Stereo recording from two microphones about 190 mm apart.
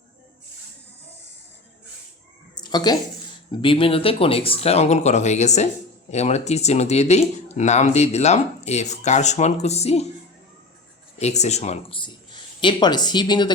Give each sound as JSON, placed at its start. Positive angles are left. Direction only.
{"t": 2.6, "sound": "a sound", "side_deg": 20}
{"t": 3.5, "sound": "speech", "side_deg": 25}
{"t": 11.2, "sound": "speech", "side_deg": 35}